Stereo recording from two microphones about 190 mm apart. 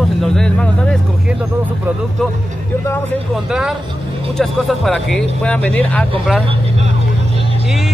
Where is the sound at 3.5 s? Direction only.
Centre (ahead or behind).